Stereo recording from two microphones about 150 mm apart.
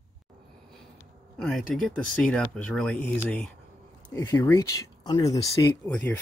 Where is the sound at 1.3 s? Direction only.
Centre (ahead or behind); by 5.8 s 20° left (ahead or behind).